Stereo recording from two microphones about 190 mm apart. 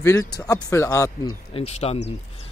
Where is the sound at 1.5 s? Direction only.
35° left (ahead or behind).